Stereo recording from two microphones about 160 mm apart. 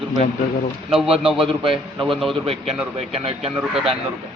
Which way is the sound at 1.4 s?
35° right (ahead or behind).